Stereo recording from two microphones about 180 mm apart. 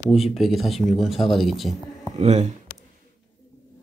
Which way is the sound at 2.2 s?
40° right (ahead or behind).